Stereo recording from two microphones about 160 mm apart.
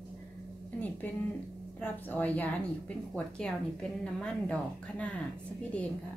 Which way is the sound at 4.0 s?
5° left (ahead or behind).